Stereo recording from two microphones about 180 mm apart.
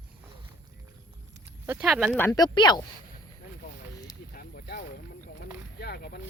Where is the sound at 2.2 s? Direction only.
20° left (ahead or behind).